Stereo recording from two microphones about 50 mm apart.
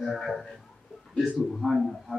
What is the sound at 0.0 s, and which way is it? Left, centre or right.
Music, centre.